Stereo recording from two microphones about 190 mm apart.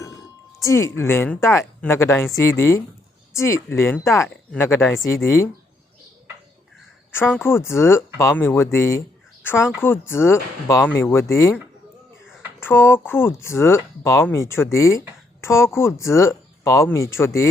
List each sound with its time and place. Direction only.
0.6 s speech: 15° left (ahead or behind)
7.4 s speech: 15° left (ahead or behind)